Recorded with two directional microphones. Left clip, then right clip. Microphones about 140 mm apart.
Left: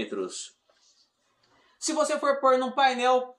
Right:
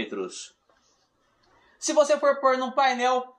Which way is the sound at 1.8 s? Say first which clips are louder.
Right 5 dB; 20° right (ahead or behind).